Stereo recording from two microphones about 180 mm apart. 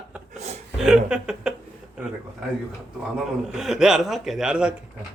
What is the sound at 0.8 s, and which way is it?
Speech, 5° right (ahead or behind).